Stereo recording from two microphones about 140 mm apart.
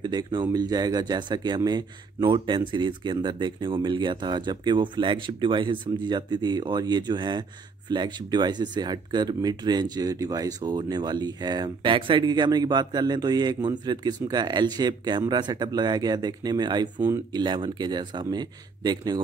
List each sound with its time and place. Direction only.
0.0 s speech: 30° right (ahead or behind)